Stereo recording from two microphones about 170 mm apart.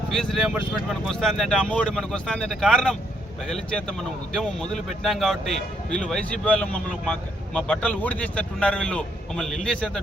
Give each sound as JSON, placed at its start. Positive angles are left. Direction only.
{"t": 0.1, "sound": "speech", "side_deg": 0}